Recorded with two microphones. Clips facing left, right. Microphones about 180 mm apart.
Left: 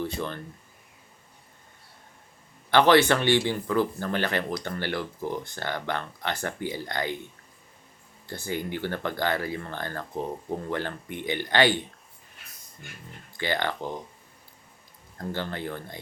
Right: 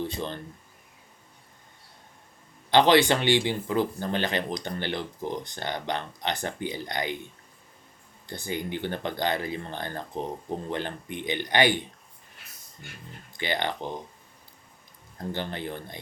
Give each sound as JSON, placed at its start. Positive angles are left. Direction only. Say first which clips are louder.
{"t": 0.0, "sound": "speech", "louder": "left 1 dB", "side_deg": -20}
{"t": 2.6, "sound": "speech", "louder": "even", "side_deg": -20}
{"t": 8.3, "sound": "speech", "louder": "left 1 dB", "side_deg": -20}
{"t": 13.3, "sound": "speech", "louder": "left 1 dB", "side_deg": -20}
{"t": 15.3, "sound": "speech", "louder": "left 1 dB", "side_deg": -20}